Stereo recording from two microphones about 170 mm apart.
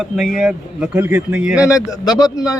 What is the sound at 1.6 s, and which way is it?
Speech, 20° left (ahead or behind).